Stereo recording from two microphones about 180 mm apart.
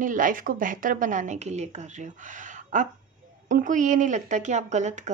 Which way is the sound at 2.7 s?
45° right (ahead or behind).